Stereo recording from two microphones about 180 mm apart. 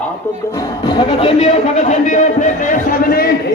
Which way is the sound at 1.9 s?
45° left (ahead or behind).